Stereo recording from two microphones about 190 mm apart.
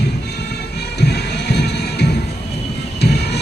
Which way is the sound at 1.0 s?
60° left (ahead or behind).